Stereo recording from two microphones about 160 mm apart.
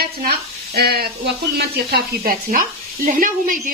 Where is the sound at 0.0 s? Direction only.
75° right (ahead or behind).